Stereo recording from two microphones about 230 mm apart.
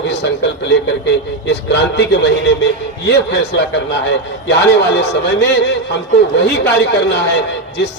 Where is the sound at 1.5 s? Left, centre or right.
Left.